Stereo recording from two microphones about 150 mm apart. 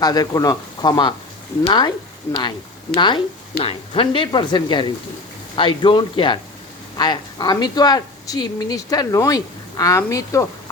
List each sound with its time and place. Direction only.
0.0 s a woman's voice: 25° left (ahead or behind)
2.9 s a woman's voice: 30° left (ahead or behind)